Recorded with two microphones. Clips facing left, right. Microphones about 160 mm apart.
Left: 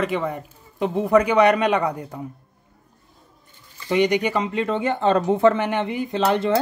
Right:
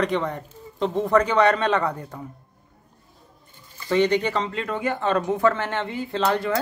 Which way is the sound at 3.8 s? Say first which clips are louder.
Left 1 dB; 15° left (ahead or behind).